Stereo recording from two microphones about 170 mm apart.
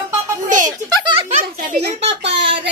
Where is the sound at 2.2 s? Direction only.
85° right.